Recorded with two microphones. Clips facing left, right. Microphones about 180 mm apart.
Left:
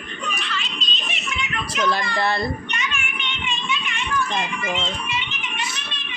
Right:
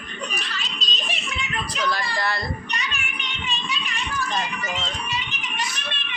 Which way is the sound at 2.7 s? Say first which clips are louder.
Left 2 dB; 35° right (ahead or behind).